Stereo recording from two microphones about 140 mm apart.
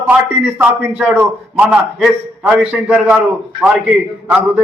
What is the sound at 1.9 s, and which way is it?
A man's voice, centre (ahead or behind).